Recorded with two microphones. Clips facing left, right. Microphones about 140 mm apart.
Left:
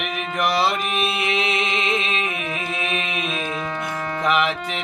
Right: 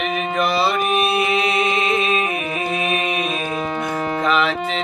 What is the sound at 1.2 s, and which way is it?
A capella, 30° right (ahead or behind).